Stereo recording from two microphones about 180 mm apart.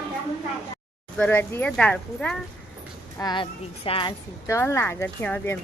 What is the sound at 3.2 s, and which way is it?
Speech, 25° left (ahead or behind).